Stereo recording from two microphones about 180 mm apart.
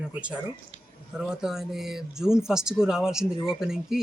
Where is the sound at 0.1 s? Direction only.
5° right (ahead or behind).